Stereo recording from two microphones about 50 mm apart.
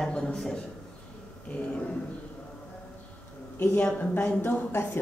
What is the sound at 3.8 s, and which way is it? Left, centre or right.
Speech, left.